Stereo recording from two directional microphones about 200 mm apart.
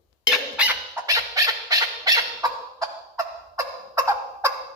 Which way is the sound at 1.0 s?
15° right (ahead or behind).